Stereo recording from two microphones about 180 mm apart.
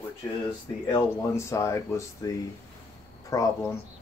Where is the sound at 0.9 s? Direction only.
20° left (ahead or behind).